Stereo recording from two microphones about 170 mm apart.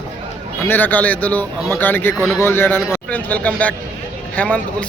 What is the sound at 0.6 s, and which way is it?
A man's voice, 10° left (ahead or behind).